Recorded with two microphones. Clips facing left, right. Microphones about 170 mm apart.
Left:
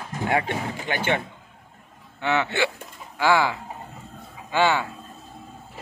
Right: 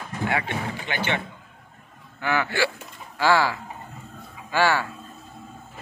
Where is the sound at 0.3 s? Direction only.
40° left (ahead or behind).